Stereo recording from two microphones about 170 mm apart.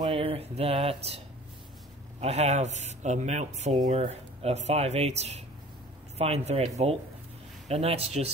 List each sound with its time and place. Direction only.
0.0 s speech: 35° right (ahead or behind)